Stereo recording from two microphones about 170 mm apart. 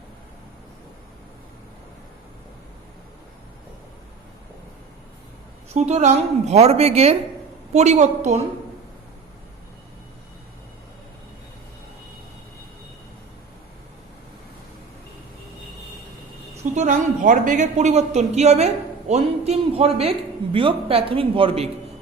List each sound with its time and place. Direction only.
5.7 s a man's voice: 40° right (ahead or behind)
16.7 s a man's voice: 50° right (ahead or behind); by 21.7 s 35° right (ahead or behind)